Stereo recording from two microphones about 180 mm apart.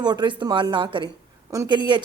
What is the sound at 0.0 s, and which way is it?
A woman's voice, 25° right (ahead or behind).